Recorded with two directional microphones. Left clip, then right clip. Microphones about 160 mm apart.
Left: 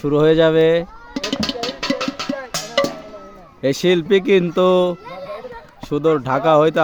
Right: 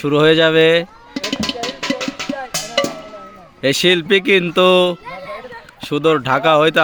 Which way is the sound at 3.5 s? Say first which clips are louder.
Right 3 dB; 5° left (ahead or behind).